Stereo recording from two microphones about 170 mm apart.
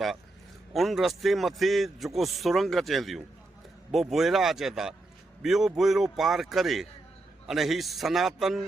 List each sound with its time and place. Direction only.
0.7 s a man's voice: centre (ahead or behind)